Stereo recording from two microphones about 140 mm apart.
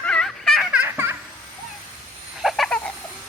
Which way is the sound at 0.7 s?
15° right (ahead or behind).